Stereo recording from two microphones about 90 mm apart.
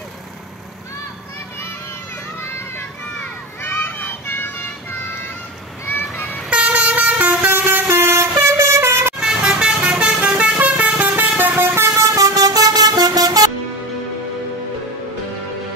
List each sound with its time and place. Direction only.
3.6 s music: 25° left (ahead or behind)
6.5 s vehicle: 10° right (ahead or behind); by 9.1 s 30° right (ahead or behind)
9.2 s vehicle: 10° right (ahead or behind); by 13.5 s 45° right (ahead or behind)